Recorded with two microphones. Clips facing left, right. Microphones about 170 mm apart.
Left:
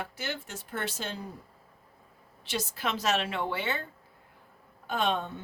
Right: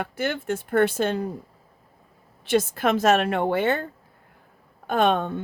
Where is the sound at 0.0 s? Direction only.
55° right (ahead or behind).